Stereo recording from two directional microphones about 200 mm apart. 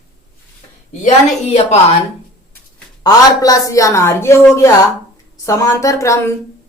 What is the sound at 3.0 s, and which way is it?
Speech, 15° left (ahead or behind).